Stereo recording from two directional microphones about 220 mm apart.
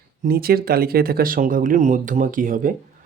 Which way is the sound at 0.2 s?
45° right (ahead or behind).